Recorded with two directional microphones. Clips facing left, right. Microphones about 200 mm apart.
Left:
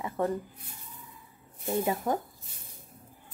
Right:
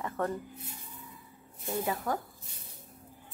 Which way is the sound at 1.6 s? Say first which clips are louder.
Left 4 dB; 20° left (ahead or behind).